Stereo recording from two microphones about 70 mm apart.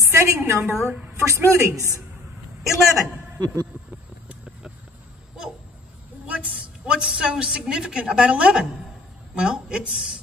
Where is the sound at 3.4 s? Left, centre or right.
Right.